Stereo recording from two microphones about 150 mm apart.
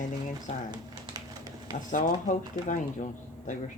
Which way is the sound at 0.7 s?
30° right (ahead or behind).